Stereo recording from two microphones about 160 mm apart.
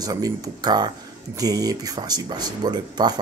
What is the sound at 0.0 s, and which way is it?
Speech, 20° right (ahead or behind).